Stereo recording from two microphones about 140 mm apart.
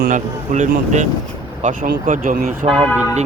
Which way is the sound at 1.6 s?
75° right (ahead or behind).